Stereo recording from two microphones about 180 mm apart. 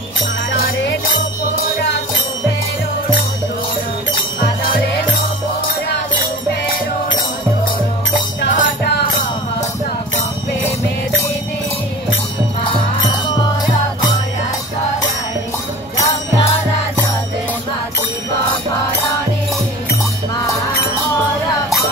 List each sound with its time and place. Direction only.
8.6 s music: 70° left (ahead or behind)